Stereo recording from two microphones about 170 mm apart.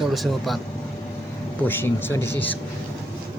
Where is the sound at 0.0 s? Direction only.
Centre (ahead or behind).